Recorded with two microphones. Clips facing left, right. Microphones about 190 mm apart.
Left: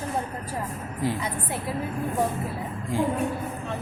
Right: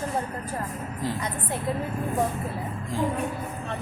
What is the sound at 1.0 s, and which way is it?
Speech, 15° left (ahead or behind).